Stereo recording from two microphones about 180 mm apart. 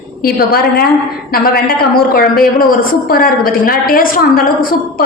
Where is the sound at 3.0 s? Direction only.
55° left (ahead or behind).